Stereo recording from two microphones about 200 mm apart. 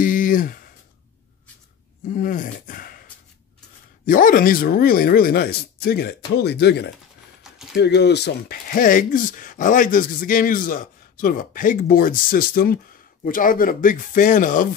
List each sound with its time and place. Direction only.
0.0 s a sound: 40° left (ahead or behind)
2.1 s speech: 45° left (ahead or behind)
7.4 s mechanisms: centre (ahead or behind)
7.7 s speech: 60° left (ahead or behind); by 14.8 s 40° left (ahead or behind)